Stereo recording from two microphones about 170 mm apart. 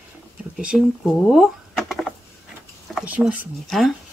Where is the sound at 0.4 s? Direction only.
5° right (ahead or behind).